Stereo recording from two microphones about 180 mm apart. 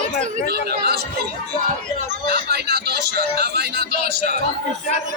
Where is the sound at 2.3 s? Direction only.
65° right (ahead or behind).